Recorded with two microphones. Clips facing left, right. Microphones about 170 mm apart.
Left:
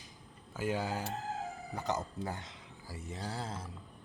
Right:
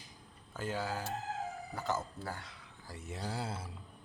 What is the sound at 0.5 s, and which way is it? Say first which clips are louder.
Speech: left 3 dB; 10° left (ahead or behind).